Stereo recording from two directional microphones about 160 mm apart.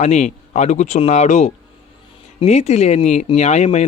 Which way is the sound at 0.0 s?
45° left (ahead or behind).